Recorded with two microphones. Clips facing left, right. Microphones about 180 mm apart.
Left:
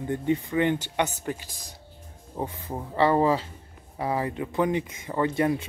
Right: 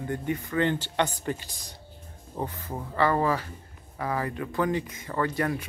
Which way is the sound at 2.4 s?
20° left (ahead or behind).